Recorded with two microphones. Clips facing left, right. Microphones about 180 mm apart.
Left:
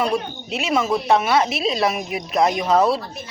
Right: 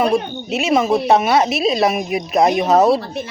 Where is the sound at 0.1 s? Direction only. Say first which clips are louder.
Right 5 dB; 25° right (ahead or behind).